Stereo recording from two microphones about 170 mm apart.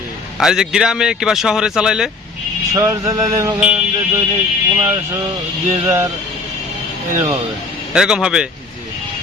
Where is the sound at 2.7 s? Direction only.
15° right (ahead or behind).